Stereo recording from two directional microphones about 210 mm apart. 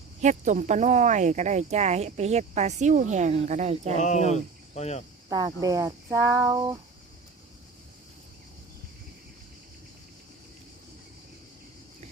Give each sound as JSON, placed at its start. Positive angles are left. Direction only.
{"t": 0.2, "sound": "speech", "side_deg": -35}
{"t": 4.0, "sound": "speech", "side_deg": 35}
{"t": 5.3, "sound": "speech", "side_deg": -15}